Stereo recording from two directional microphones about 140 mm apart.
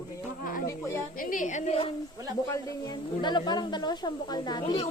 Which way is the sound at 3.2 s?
30° left (ahead or behind).